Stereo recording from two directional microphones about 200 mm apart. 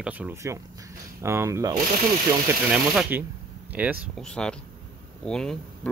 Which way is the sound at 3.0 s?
10° right (ahead or behind).